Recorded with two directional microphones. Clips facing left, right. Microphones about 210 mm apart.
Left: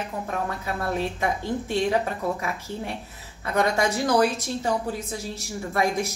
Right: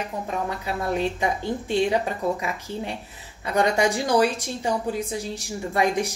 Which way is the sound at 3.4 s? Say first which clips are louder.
Right 2 dB; 15° right (ahead or behind).